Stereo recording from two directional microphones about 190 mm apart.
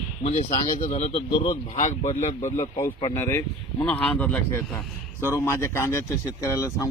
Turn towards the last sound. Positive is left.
turn(degrees=15)  # may be behind; listen again after turning